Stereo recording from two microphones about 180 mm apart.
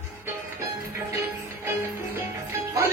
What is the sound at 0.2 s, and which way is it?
Music, 15° right (ahead or behind).